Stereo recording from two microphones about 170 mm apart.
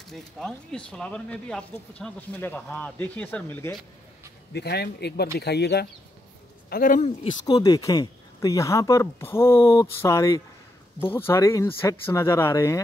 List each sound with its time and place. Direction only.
0.0 s speech: centre (ahead or behind)
4.5 s speech: 75° left (ahead or behind)
6.7 s speech: 55° left (ahead or behind)
7.4 s speech: 20° left (ahead or behind)